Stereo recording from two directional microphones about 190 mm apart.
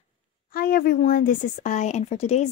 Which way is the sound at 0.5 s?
50° left (ahead or behind).